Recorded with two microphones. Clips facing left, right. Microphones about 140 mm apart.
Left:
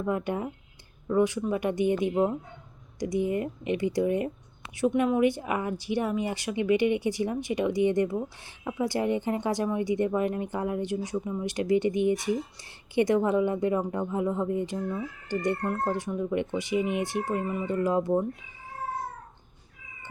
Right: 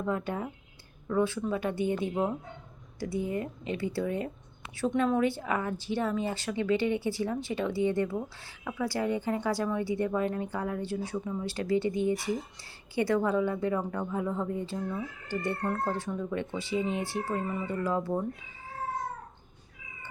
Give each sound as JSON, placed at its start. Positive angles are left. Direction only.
{"t": 0.0, "sound": "speech", "side_deg": 15}